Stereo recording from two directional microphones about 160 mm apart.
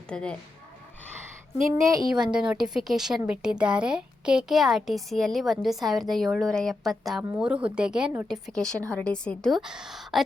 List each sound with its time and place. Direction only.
0.1 s speech: 5° left (ahead or behind)
1.8 s a woman's voice: 20° right (ahead or behind)
2.1 s speech: 5° right (ahead or behind)
8.9 s speech: 5° left (ahead or behind)